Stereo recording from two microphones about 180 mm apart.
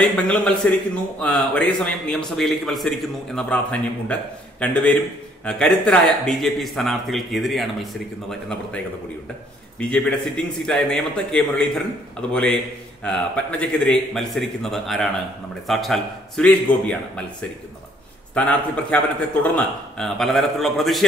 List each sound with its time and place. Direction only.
0.0 s a man's voice: 5° left (ahead or behind)